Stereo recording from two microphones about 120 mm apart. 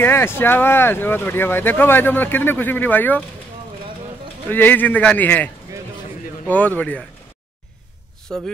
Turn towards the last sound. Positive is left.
turn(degrees=10)  # may be behind; listen again after turning